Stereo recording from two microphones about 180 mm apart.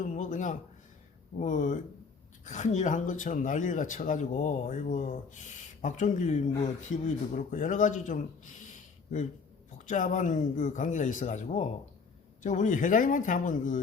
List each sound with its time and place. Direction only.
0.0 s a sound: 45° left (ahead or behind)
1.4 s speech: 45° left (ahead or behind)
9.7 s speech: 45° left (ahead or behind)